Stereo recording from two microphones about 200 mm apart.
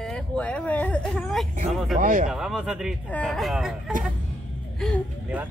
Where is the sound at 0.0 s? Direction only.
5° left (ahead or behind).